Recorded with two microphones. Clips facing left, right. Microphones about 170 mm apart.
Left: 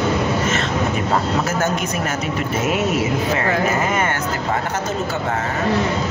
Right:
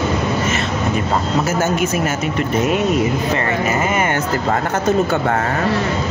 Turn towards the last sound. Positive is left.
turn(degrees=-10)  # may be behind; listen again after turning